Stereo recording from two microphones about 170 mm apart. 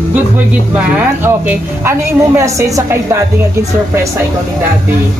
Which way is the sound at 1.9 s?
15° right (ahead or behind).